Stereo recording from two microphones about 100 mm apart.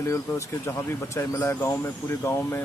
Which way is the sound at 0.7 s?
25° left (ahead or behind).